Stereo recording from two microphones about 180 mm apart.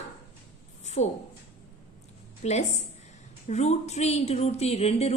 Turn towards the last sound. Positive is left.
turn(degrees=35)  # may be behind; listen again after turning